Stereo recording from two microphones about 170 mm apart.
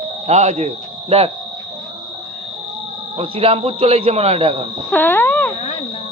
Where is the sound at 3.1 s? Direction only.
35° right (ahead or behind).